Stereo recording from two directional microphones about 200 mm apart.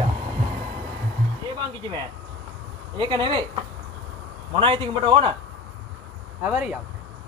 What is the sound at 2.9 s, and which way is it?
Speech, 25° right (ahead or behind).